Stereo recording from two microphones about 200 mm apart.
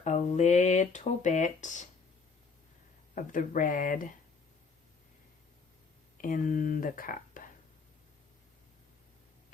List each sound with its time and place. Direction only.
0.0 s speech: 35° left (ahead or behind)
3.2 s speech: 40° left (ahead or behind)
6.2 s speech: 40° left (ahead or behind)